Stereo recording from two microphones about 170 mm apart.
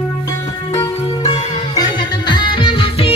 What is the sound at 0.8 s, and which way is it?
Music, 20° left (ahead or behind).